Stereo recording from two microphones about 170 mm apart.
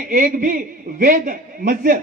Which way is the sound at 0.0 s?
55° right (ahead or behind).